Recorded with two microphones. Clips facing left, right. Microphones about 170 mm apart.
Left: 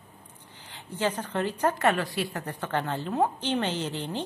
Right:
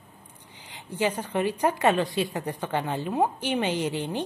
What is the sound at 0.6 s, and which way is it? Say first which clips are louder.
A woman's voice: right 2 dB; 15° right (ahead or behind).